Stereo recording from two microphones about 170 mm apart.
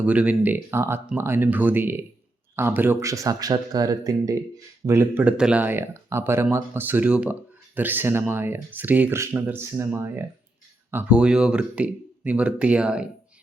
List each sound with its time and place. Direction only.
0.0 s speech: 10° right (ahead or behind)